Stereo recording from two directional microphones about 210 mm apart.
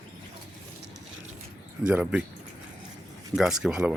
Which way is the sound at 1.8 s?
5° right (ahead or behind).